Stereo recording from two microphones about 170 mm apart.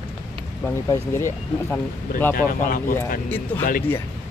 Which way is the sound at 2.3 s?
55° left (ahead or behind).